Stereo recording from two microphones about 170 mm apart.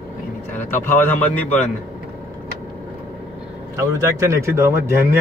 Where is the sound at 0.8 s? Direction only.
10° left (ahead or behind).